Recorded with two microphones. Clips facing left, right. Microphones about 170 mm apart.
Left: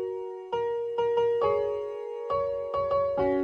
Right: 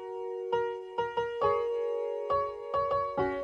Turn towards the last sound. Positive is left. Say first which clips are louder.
# left 5 dB
turn(degrees=0)  # may be behind; listen again after turning